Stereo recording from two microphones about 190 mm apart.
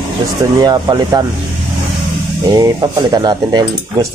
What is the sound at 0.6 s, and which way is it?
Speech, 20° right (ahead or behind).